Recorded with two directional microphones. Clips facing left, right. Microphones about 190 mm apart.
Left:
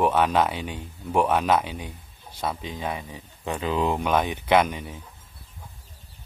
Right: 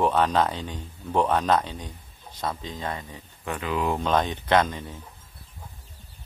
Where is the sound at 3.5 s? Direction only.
25° left (ahead or behind).